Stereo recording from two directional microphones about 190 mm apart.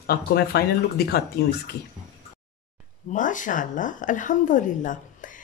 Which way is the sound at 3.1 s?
45° left (ahead or behind).